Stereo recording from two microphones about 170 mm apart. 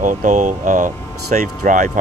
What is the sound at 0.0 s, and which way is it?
Speech, 45° right (ahead or behind).